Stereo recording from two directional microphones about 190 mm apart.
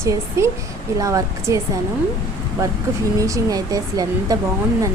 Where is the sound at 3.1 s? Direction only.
15° right (ahead or behind).